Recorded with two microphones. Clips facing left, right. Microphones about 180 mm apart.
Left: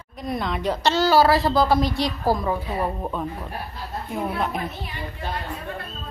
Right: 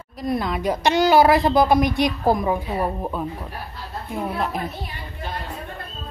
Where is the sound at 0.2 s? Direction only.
5° right (ahead or behind).